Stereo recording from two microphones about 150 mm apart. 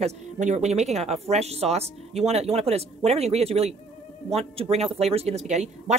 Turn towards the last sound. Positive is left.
turn(degrees=-50)  # may be behind; listen again after turning